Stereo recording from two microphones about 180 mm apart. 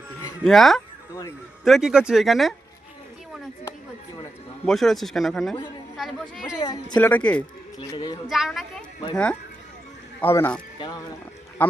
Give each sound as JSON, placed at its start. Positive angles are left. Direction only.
{"t": 0.4, "sound": "a man's voice", "side_deg": 0}
{"t": 4.6, "sound": "a man's voice", "side_deg": 0}
{"t": 6.6, "sound": "speech", "side_deg": 20}
{"t": 6.9, "sound": "speech", "side_deg": 10}
{"t": 7.8, "sound": "speech", "side_deg": 25}
{"t": 8.3, "sound": "a man's voice", "side_deg": 0}
{"t": 10.8, "sound": "speech", "side_deg": 25}
{"t": 11.6, "sound": "speech", "side_deg": 10}